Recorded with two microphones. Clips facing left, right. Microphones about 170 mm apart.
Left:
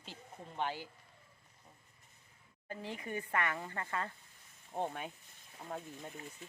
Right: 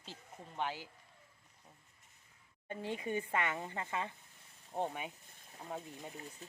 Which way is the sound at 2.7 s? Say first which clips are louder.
Right 3 dB; 25° right (ahead or behind).